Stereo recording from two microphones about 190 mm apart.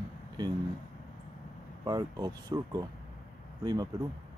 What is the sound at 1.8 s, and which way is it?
Speech, 20° right (ahead or behind).